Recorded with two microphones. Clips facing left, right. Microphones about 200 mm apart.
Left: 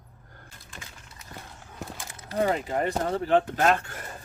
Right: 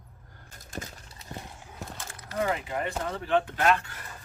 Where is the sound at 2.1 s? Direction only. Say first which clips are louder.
Left 4 dB; 30° left (ahead or behind).